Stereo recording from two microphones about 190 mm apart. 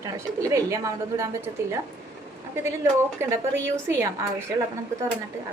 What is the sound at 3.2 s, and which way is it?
Speech, 15° right (ahead or behind).